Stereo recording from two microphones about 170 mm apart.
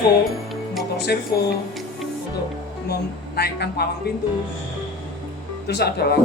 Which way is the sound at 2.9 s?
70° left (ahead or behind).